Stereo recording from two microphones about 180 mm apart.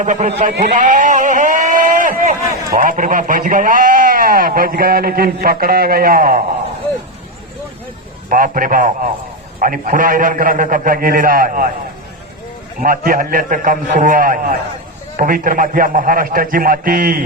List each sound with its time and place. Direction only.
0.0 s a man's voice: 40° right (ahead or behind)
0.6 s a sound: 45° right (ahead or behind)
2.7 s a man's voice: 50° right (ahead or behind)
8.3 s a man's voice: 50° right (ahead or behind)
12.8 s a man's voice: 50° right (ahead or behind)